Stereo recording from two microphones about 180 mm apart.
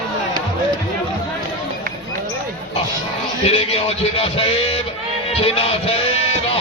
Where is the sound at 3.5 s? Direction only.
35° left (ahead or behind).